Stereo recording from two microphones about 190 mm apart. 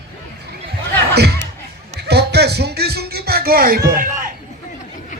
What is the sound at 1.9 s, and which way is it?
Music, 60° right (ahead or behind).